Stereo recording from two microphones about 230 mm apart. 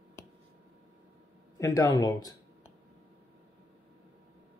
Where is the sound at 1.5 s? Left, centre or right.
Centre.